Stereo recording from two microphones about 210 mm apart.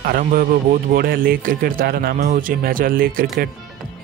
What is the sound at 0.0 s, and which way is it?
Speech, 40° right (ahead or behind).